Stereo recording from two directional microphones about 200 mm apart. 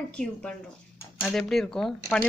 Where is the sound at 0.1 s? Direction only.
5° left (ahead or behind).